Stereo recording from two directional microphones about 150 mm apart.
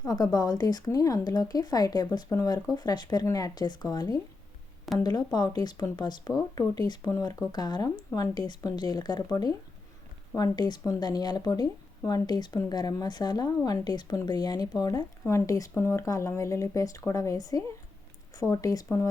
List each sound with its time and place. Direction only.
0.0 s speech: 25° left (ahead or behind)